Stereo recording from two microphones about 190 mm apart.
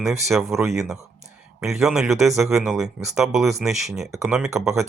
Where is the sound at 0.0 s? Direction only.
Centre (ahead or behind).